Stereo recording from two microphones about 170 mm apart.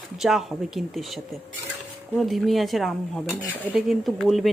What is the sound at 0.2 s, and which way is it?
Speech, centre (ahead or behind).